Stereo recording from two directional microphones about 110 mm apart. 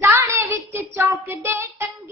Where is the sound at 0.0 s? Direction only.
25° right (ahead or behind).